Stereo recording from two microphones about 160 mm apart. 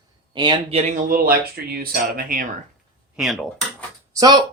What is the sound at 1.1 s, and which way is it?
Speech, 70° right (ahead or behind).